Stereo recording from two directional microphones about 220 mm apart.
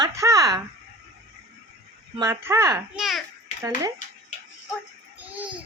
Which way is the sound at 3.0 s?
Centre (ahead or behind).